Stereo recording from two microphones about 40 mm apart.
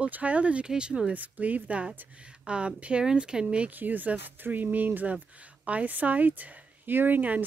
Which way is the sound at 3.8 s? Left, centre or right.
Right.